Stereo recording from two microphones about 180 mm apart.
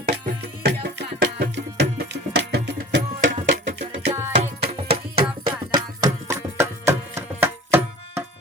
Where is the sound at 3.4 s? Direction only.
45° right (ahead or behind).